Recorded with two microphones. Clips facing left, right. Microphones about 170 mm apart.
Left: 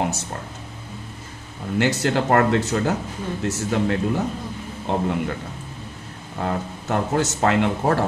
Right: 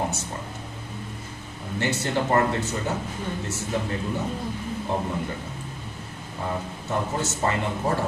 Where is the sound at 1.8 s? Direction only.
90° left.